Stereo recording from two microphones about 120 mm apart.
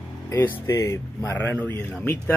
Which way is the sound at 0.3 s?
20° left (ahead or behind).